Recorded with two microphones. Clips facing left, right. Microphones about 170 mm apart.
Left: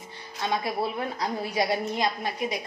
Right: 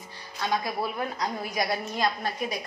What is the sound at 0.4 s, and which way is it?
A woman's voice, 25° left (ahead or behind).